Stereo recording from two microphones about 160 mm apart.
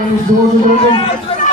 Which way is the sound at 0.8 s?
35° left (ahead or behind).